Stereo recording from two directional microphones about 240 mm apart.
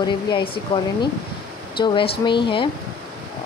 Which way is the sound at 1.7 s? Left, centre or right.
Centre.